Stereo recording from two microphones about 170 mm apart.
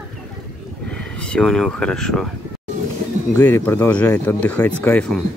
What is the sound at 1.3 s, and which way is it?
Speech, 5° left (ahead or behind).